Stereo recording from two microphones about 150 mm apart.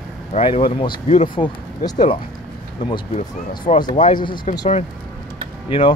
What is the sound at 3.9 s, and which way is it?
Speech, 55° left (ahead or behind).